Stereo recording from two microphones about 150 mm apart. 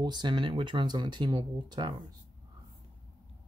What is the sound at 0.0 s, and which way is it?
Speech, 30° right (ahead or behind).